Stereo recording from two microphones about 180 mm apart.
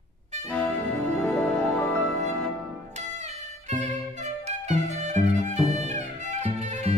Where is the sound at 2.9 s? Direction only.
40° right (ahead or behind).